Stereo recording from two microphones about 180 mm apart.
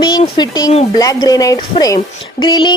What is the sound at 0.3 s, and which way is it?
Speech, 20° left (ahead or behind).